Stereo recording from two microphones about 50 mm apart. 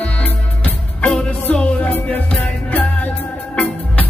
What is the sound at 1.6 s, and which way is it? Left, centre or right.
Music, left.